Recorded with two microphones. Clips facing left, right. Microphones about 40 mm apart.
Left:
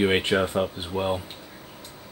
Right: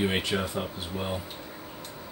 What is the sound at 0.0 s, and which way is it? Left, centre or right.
Speech, left.